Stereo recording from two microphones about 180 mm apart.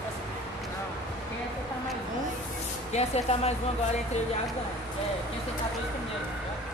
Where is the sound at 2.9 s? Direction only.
35° left (ahead or behind).